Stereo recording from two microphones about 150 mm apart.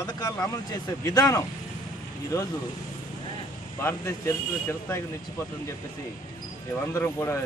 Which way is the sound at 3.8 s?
20° left (ahead or behind).